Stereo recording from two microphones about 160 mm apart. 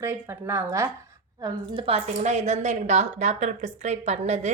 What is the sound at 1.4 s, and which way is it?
A woman's voice, 35° right (ahead or behind).